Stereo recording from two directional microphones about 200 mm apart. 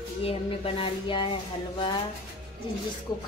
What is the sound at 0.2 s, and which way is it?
Speech, 30° left (ahead or behind).